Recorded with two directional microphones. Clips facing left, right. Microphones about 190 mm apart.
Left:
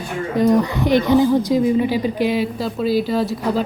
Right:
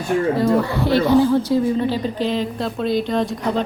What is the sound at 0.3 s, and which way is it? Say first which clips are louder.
Speech: left 2 dB; 15° left (ahead or behind).